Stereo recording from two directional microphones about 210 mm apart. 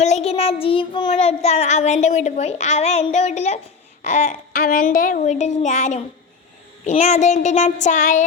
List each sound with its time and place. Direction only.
0.0 s child singing: 30° left (ahead or behind)
1.1 s a woman's voice: 30° left (ahead or behind)